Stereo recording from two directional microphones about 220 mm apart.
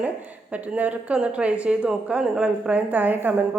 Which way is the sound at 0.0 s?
5° right (ahead or behind).